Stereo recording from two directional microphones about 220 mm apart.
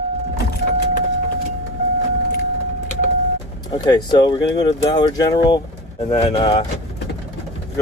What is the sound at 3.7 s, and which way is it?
Speech, 20° left (ahead or behind).